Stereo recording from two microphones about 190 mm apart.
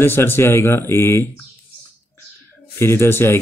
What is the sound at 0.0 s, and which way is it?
Speech, 10° left (ahead or behind).